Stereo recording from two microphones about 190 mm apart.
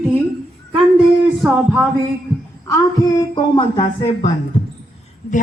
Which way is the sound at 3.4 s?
25° left (ahead or behind).